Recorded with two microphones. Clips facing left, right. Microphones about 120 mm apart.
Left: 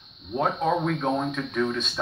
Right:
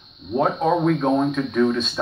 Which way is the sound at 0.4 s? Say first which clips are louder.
Right 5 dB; 10° right (ahead or behind).